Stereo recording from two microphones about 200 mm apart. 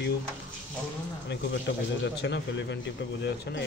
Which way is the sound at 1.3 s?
60° left (ahead or behind).